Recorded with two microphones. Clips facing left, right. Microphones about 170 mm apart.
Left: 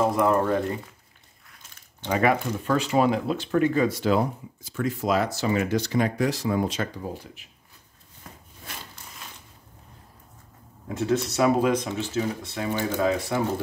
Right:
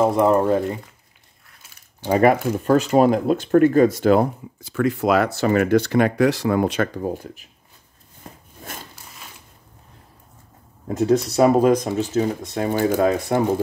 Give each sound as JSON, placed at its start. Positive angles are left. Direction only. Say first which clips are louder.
{"t": 0.0, "sound": "speech", "louder": "right 5 dB", "side_deg": -25}
{"t": 2.0, "sound": "speech", "louder": "right 6 dB", "side_deg": -40}
{"t": 10.9, "sound": "speech", "louder": "right 6 dB", "side_deg": -40}